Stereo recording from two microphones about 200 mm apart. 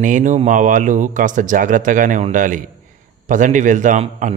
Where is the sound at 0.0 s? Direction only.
40° right (ahead or behind).